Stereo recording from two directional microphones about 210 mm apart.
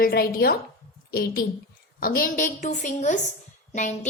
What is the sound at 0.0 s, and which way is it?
A woman's voice, 45° left (ahead or behind).